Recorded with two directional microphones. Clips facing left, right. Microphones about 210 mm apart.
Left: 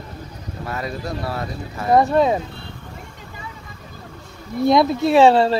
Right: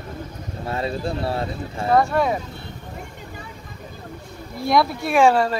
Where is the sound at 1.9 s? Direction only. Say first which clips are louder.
Left 3 dB; 20° left (ahead or behind).